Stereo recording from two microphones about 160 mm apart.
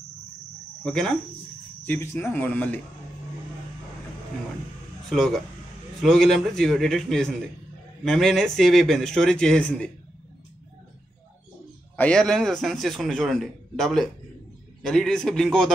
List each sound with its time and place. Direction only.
0.8 s a man's voice: 5° left (ahead or behind)
1.9 s speech: 15° left (ahead or behind)
5.1 s a man's voice: centre (ahead or behind)
12.0 s a man's voice: 5° left (ahead or behind)